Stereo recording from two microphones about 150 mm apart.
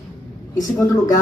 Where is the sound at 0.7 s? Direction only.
20° left (ahead or behind).